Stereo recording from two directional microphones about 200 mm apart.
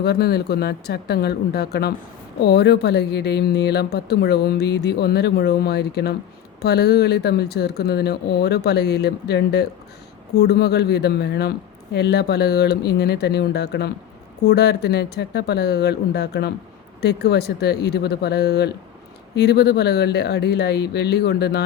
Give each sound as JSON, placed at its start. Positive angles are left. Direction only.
{"t": 0.0, "sound": "speech", "side_deg": 55}